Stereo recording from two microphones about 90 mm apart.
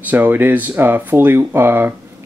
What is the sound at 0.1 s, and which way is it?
Speech, 20° right (ahead or behind).